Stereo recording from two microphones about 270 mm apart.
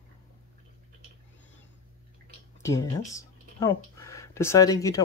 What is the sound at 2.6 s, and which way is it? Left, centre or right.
Speech, centre.